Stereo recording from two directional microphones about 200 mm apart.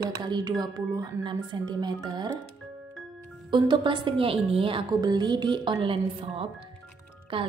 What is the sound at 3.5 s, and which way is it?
A woman's voice, 25° right (ahead or behind).